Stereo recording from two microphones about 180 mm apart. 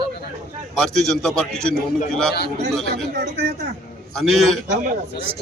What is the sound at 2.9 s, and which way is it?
Speech, 60° right (ahead or behind).